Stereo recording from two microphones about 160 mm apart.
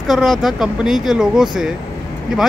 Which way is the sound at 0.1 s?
Centre (ahead or behind).